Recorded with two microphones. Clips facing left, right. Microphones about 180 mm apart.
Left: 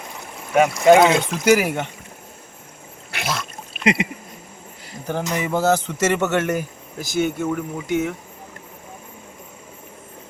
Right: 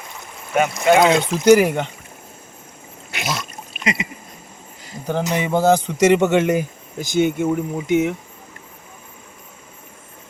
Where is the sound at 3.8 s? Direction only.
60° left (ahead or behind).